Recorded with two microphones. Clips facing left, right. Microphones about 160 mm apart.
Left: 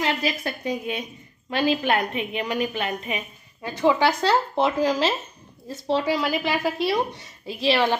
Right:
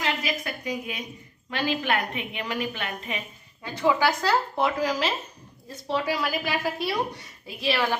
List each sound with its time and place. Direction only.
0.2 s a woman's voice: 30° left (ahead or behind); by 3.9 s 15° left (ahead or behind)
4.0 s a woman's voice: 25° left (ahead or behind)